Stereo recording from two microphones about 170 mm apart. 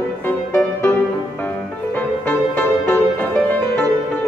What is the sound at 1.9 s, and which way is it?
Music, 10° left (ahead or behind).